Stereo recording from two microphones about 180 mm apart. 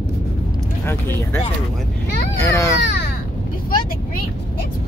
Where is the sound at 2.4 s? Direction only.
15° left (ahead or behind).